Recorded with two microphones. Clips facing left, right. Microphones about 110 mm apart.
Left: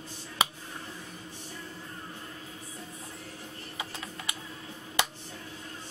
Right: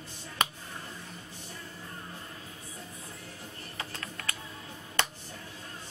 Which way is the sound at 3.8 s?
15° left (ahead or behind).